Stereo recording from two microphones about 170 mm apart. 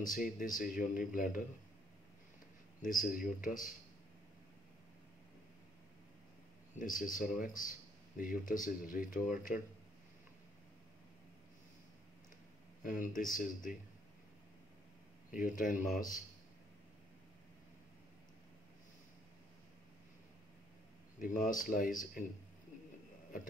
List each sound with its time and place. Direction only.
0.1 s speech: 55° left (ahead or behind)
2.8 s speech: 50° left (ahead or behind)
6.8 s speech: 55° left (ahead or behind)
12.8 s speech: 50° left (ahead or behind)
15.3 s speech: 50° left (ahead or behind)
21.2 s speech: 50° left (ahead or behind)